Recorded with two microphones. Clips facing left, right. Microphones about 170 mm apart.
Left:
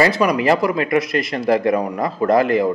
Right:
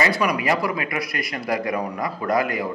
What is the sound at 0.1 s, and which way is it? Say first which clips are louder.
Speech: left 5 dB; 25° left (ahead or behind).